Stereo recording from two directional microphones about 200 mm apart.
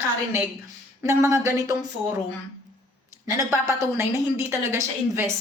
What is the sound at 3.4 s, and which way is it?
Speech, 15° right (ahead or behind).